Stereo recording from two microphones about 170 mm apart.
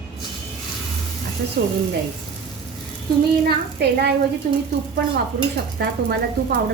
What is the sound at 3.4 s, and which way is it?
Speech, 70° right (ahead or behind).